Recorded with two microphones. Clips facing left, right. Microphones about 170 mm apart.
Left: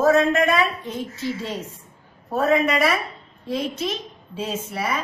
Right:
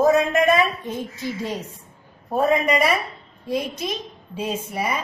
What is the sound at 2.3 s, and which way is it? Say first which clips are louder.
A woman's voice: even; 15° right (ahead or behind).